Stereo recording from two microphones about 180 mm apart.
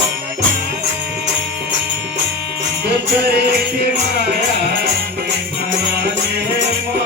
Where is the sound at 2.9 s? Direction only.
65° right (ahead or behind).